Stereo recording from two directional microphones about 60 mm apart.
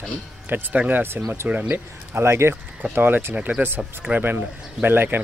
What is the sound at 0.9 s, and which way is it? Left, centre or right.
Speech, right.